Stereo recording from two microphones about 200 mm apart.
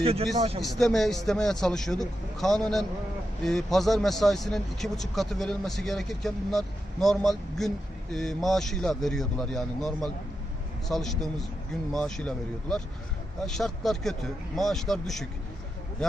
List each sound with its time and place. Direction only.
0.0 s a man's voice: 30° right (ahead or behind)
0.6 s speech: centre (ahead or behind)